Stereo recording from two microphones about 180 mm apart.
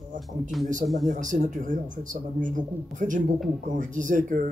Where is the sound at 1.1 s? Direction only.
45° right (ahead or behind).